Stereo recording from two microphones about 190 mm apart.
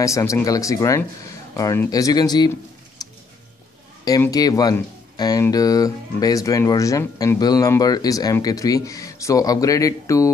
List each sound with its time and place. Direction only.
0.0 s speech: 15° left (ahead or behind)
3.0 s music: 20° left (ahead or behind)
4.0 s speech: 20° left (ahead or behind)